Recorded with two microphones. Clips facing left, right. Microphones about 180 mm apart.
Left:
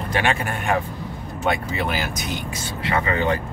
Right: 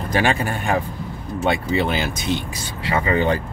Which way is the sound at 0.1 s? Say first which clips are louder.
Right 3 dB; 35° right (ahead or behind).